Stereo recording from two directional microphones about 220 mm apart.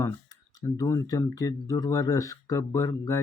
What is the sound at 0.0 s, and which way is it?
Speech, 15° left (ahead or behind).